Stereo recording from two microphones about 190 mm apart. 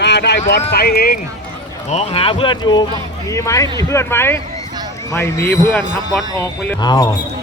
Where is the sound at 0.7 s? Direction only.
55° left (ahead or behind).